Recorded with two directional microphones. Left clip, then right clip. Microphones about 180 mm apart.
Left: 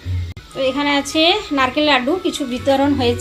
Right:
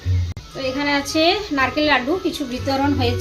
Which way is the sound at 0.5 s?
20° left (ahead or behind).